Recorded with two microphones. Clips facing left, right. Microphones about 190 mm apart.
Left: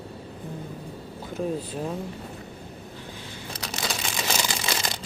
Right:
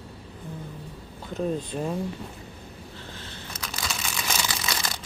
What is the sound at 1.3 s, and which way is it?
Speech, centre (ahead or behind).